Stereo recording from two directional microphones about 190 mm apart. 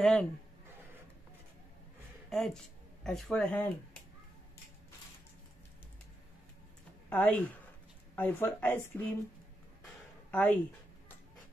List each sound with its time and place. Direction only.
0.0 s speech: 5° left (ahead or behind)
2.2 s speech: centre (ahead or behind)
7.1 s speech: 10° left (ahead or behind)
10.3 s speech: 10° left (ahead or behind)